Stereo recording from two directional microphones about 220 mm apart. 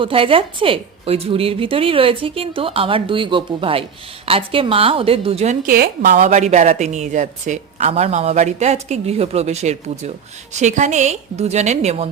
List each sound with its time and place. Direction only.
0.0 s a woman's voice: 25° right (ahead or behind)